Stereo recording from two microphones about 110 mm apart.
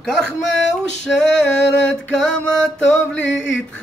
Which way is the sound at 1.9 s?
10° left (ahead or behind).